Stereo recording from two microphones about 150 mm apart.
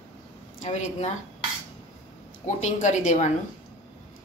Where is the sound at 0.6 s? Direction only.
50° left (ahead or behind).